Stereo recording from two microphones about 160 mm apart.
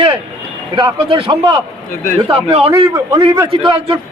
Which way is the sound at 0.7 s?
35° right (ahead or behind).